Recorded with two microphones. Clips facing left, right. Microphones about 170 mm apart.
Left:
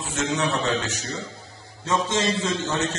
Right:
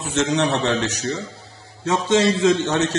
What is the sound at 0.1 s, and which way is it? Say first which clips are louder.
Speech: right 5 dB; 85° right.